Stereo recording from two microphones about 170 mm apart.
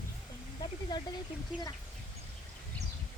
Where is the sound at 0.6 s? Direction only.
25° left (ahead or behind).